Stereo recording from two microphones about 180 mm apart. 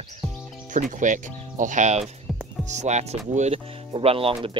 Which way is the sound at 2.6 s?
40° right (ahead or behind).